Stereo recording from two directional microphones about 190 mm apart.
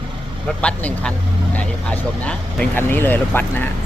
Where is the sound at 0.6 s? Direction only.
5° left (ahead or behind).